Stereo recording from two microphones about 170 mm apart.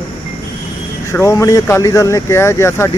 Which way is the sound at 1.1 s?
20° left (ahead or behind).